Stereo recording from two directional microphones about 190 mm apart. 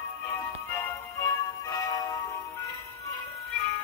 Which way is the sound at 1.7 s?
20° left (ahead or behind).